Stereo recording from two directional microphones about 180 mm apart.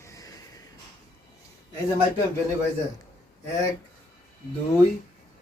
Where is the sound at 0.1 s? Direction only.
20° left (ahead or behind).